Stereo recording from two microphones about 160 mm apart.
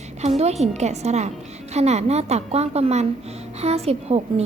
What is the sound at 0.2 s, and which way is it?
A woman's voice, 40° right (ahead or behind).